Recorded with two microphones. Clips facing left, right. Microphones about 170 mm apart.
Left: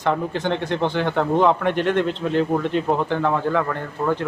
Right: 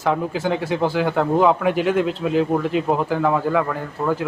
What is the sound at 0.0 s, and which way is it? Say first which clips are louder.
Speech: right 1 dB; 5° right (ahead or behind).